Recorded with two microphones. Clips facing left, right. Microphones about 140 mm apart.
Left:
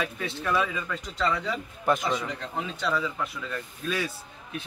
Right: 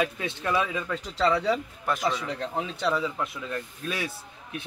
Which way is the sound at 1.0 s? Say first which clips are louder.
Right 5 dB; 30° right (ahead or behind).